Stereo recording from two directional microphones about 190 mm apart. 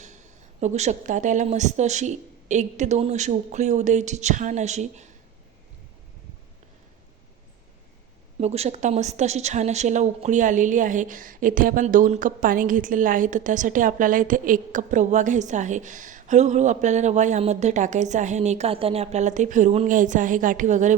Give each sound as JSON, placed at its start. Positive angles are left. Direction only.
{"t": 0.0, "sound": "a woman's voice", "side_deg": -40}
{"t": 8.4, "sound": "a woman's voice", "side_deg": -35}